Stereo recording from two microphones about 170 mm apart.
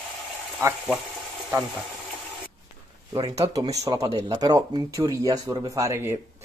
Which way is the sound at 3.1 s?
20° right (ahead or behind).